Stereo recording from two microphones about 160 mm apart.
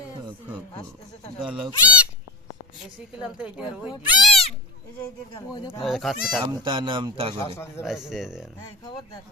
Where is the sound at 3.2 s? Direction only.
5° right (ahead or behind).